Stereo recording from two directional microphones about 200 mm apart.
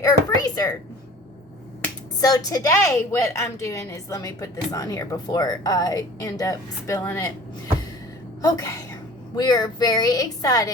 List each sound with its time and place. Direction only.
0.0 s a sound: 20° left (ahead or behind)
2.2 s a woman's voice: 20° left (ahead or behind)
8.4 s a woman's voice: 15° left (ahead or behind)